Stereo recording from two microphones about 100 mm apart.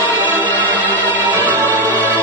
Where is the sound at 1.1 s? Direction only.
20° right (ahead or behind).